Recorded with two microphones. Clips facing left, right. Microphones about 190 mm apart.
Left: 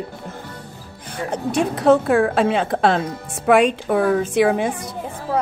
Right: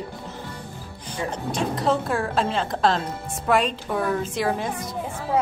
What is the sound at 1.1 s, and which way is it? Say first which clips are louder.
A woman's voice: left 6 dB; 65° left (ahead or behind).